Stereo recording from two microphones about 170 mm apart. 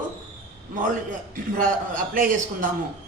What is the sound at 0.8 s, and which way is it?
A man's voice, 55° right (ahead or behind).